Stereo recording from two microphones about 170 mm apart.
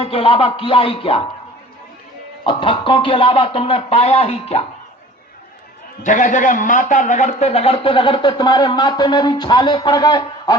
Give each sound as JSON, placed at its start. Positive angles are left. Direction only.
{"t": 0.0, "sound": "speech", "side_deg": 35}
{"t": 2.4, "sound": "speech", "side_deg": 30}
{"t": 6.0, "sound": "a man's voice", "side_deg": 45}